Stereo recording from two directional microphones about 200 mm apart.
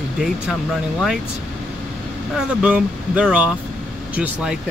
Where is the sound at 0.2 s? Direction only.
Centre (ahead or behind).